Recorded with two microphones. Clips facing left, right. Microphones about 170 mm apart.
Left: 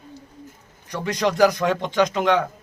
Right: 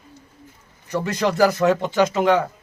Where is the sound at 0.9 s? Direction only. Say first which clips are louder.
Right 1 dB; 5° right (ahead or behind).